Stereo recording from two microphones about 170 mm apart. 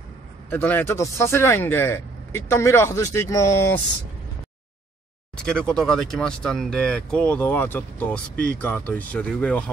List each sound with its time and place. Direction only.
0.5 s speech: 10° left (ahead or behind)
5.3 s speech: 5° left (ahead or behind)